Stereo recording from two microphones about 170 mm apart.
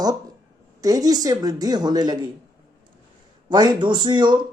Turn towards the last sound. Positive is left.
turn(degrees=-25)  # may be behind; listen again after turning